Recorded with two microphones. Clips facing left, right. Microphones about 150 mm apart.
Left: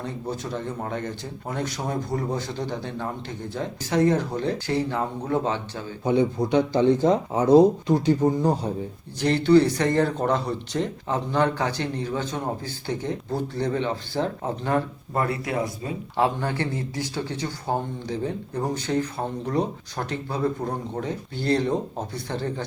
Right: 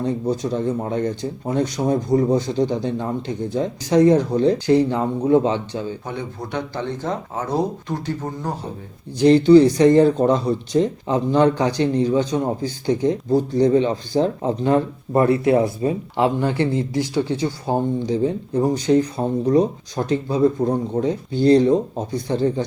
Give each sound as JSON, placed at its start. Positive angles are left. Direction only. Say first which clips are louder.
{"t": 0.9, "sound": "speech", "louder": "right 8 dB", "side_deg": -15}
{"t": 6.1, "sound": "speech", "louder": "left 8 dB", "side_deg": 15}
{"t": 9.1, "sound": "speech", "louder": "right 7 dB", "side_deg": -15}
{"t": 16.1, "sound": "speech", "louder": "right 2 dB", "side_deg": -20}